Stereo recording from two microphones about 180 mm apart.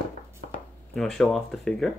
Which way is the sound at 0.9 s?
5° left (ahead or behind).